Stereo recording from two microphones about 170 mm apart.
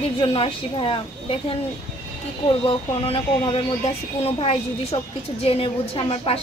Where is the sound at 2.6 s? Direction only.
30° left (ahead or behind).